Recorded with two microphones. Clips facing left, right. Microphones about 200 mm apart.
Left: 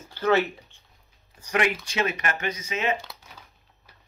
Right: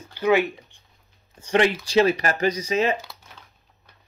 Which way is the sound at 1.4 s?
30° right (ahead or behind).